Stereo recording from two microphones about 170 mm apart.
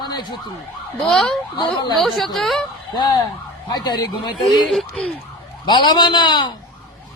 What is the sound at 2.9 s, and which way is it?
Speech, 25° left (ahead or behind).